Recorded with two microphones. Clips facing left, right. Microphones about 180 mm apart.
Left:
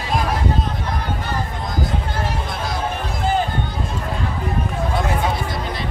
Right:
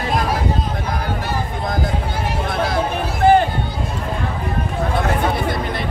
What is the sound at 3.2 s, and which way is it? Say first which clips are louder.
Music: right 9 dB; 65° right (ahead or behind).